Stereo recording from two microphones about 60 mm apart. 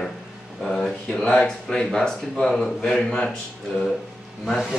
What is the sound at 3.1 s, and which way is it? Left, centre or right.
Speech, centre.